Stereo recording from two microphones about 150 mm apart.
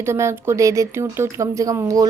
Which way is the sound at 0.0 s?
20° right (ahead or behind).